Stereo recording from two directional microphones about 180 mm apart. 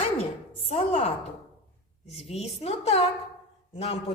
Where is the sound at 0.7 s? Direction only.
40° left (ahead or behind).